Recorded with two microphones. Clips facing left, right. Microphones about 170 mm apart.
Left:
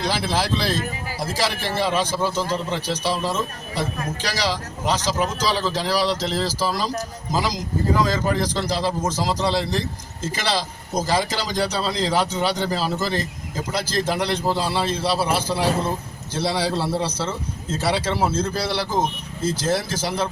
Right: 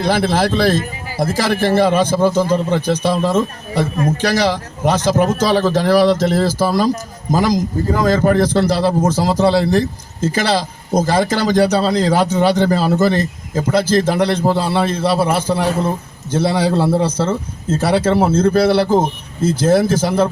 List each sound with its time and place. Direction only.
0.0 s a man's voice: 50° right (ahead or behind)